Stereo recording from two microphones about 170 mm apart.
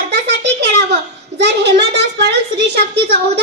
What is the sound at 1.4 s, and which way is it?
A child's voice, 90° right.